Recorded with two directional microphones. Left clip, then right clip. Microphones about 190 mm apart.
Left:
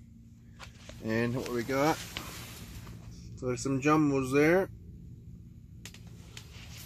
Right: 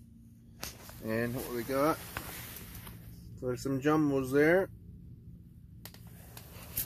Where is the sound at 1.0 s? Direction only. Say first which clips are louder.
Left 3 dB; 25° left (ahead or behind).